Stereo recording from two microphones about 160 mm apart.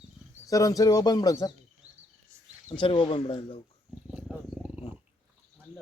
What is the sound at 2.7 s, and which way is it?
Speech, 30° left (ahead or behind).